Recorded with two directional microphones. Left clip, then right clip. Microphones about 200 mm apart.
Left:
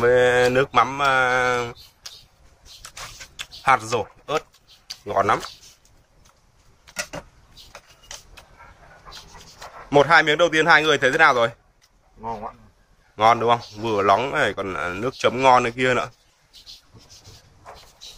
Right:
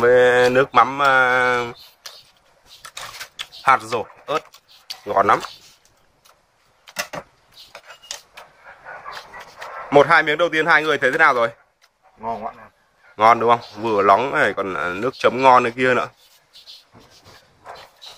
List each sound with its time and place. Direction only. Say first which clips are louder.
0.0 s speech: right 3 dB; centre (ahead or behind)
2.0 s a sound: right 1 dB; 15° left (ahead or behind)
3.6 s speech: right 2 dB; centre (ahead or behind)
9.8 s speech: right 2 dB; 5° left (ahead or behind)